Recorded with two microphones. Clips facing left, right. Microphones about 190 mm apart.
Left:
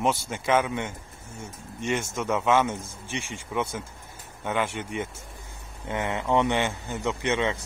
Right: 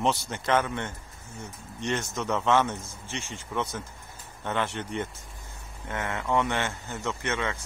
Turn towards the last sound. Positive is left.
turn(degrees=20)  # may be behind; listen again after turning